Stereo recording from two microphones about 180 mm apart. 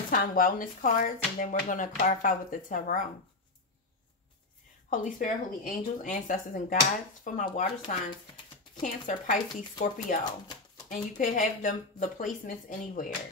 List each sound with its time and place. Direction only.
0.1 s speech: 50° left (ahead or behind)
4.8 s speech: 45° left (ahead or behind)